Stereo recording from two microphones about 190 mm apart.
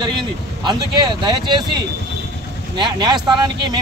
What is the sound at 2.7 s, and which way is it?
Speech, 20° right (ahead or behind).